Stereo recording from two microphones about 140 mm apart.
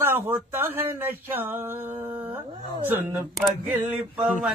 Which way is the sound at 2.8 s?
15° right (ahead or behind).